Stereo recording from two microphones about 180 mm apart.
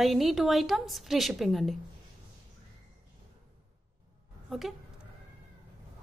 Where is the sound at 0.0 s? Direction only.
Centre (ahead or behind).